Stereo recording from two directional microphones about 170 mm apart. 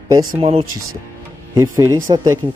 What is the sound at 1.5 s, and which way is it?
Speech, 20° right (ahead or behind).